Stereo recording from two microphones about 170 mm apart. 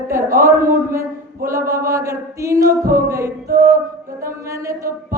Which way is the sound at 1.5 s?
20° right (ahead or behind).